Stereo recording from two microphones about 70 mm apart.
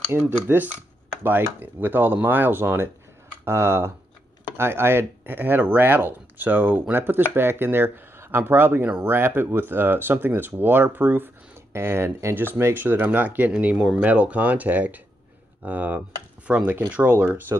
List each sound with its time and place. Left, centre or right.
0.1 s speech: right